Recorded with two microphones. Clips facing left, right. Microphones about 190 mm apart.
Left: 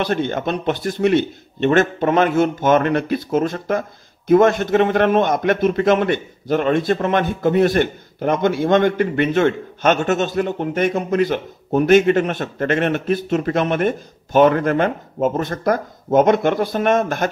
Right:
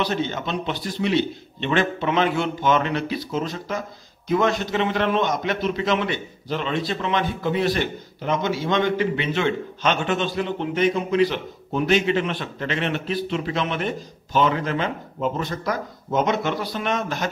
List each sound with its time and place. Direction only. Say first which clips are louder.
0.0 s a man's voice: left 4 dB; 55° left (ahead or behind)